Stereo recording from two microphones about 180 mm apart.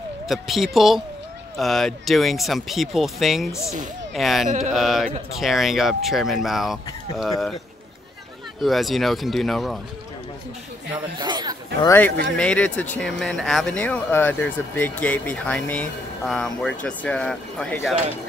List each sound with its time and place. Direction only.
0.3 s speech: centre (ahead or behind)
4.5 s a sound: 40° right (ahead or behind)
4.7 s speech: centre (ahead or behind)
8.5 s speech: centre (ahead or behind)
11.1 s chatter: 25° right (ahead or behind)
11.8 s speech: 15° left (ahead or behind)